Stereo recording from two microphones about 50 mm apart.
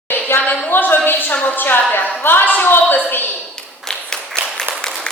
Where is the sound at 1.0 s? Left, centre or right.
Left.